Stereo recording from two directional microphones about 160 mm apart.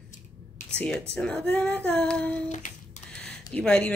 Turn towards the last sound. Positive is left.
turn(degrees=10)  # may be behind; listen again after turning